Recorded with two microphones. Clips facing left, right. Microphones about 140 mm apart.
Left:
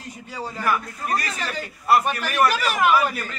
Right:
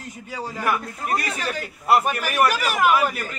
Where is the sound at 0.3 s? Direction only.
15° right (ahead or behind).